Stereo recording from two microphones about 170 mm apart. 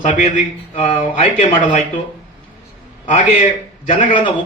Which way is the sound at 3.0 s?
50° left (ahead or behind).